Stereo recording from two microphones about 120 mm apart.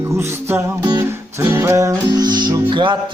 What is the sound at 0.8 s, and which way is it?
Music, 35° right (ahead or behind).